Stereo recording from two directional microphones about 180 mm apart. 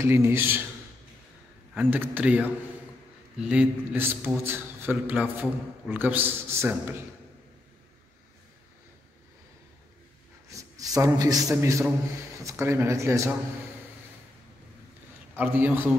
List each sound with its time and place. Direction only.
0.0 s a man's voice: 15° right (ahead or behind)
1.8 s a man's voice: 10° right (ahead or behind)
10.5 s a man's voice: 20° right (ahead or behind)
15.3 s a man's voice: 10° right (ahead or behind)